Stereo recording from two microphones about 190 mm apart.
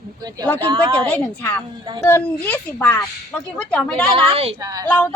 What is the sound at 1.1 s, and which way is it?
A woman's voice, 10° left (ahead or behind).